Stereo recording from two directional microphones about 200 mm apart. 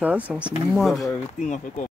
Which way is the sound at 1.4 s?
40° left (ahead or behind).